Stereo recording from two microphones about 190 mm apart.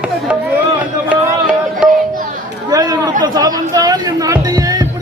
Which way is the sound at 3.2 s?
20° right (ahead or behind).